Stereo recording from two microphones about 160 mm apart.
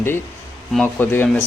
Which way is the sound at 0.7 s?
10° left (ahead or behind).